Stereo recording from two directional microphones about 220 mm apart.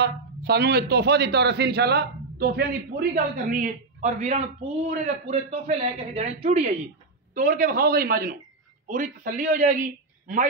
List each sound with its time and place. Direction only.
0.0 s a man's voice: 50° right (ahead or behind)